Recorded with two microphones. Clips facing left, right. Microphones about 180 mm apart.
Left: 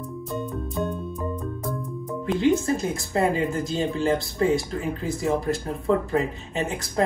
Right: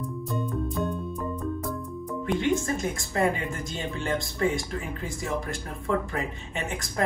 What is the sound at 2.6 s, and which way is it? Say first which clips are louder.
Speech: left 4 dB; 35° left (ahead or behind).